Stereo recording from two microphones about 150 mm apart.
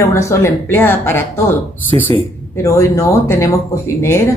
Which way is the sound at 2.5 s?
20° left (ahead or behind).